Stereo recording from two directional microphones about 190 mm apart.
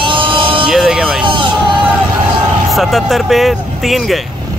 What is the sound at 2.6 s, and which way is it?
Speech, centre (ahead or behind).